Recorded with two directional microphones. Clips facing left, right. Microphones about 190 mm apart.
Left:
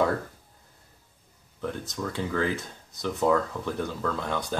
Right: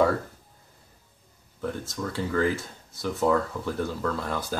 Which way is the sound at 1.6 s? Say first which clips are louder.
Right 1 dB; centre (ahead or behind).